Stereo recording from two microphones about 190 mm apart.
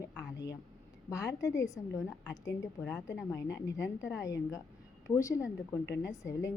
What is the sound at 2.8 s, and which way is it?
A woman's voice, 15° left (ahead or behind).